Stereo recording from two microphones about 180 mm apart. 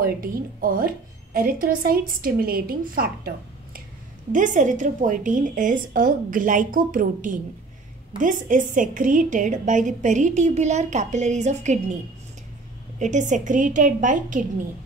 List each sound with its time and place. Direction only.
0.0 s a woman's voice: 50° right (ahead or behind)
13.0 s a woman's voice: 45° right (ahead or behind)